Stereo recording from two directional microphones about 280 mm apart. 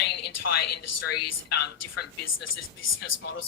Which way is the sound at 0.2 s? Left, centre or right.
Left.